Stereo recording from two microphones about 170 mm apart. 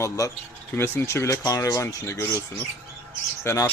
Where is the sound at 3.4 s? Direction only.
20° left (ahead or behind).